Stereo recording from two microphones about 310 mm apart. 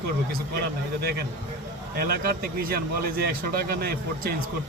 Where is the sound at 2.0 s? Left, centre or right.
Right.